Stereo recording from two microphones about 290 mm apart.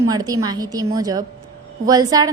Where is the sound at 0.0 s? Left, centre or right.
Centre.